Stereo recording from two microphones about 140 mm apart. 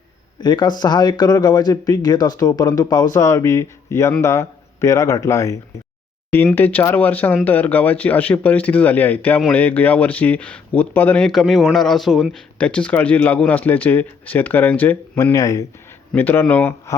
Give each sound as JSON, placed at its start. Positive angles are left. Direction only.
{"t": 0.3, "sound": "speech", "side_deg": 30}